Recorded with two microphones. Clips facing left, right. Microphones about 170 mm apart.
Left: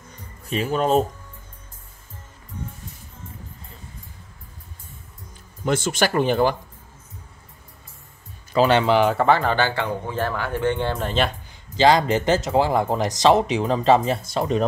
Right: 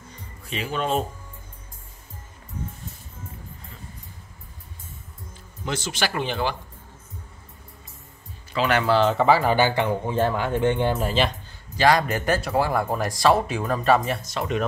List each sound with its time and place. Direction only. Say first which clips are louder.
0.5 s speech: left 5 dB; 45° left (ahead or behind)
5.7 s speech: left 6 dB; 50° left (ahead or behind)
8.5 s speech: left 3 dB; 25° left (ahead or behind)
9.1 s speech: even; 5° right (ahead or behind)
11.7 s speech: left 3 dB; 25° left (ahead or behind)